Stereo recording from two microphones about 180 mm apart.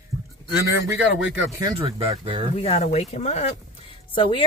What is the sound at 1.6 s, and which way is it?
Speech, 30° right (ahead or behind).